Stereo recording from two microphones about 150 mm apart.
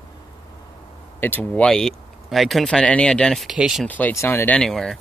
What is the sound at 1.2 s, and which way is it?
Speech, 15° left (ahead or behind).